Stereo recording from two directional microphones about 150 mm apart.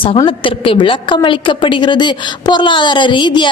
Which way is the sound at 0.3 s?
35° left (ahead or behind).